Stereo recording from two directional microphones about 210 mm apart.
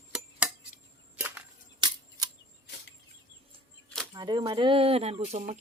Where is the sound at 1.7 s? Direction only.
20° right (ahead or behind).